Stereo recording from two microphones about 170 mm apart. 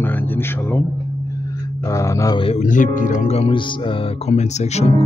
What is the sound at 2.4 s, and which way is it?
Speech, 40° left (ahead or behind).